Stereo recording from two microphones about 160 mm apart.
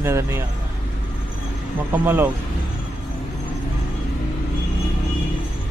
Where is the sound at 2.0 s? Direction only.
10° right (ahead or behind).